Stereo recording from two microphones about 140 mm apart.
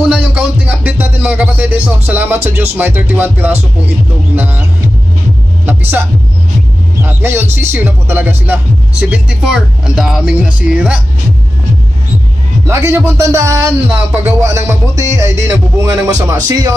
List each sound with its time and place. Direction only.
0.1 s music: 10° right (ahead or behind)
5.7 s speech: 15° right (ahead or behind)
12.6 s speech: 20° right (ahead or behind)